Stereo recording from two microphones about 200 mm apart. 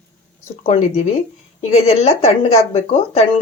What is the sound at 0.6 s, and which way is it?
Speech, 30° left (ahead or behind).